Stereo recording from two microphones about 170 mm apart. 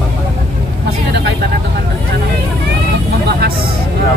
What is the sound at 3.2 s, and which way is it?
Speech, 70° right (ahead or behind).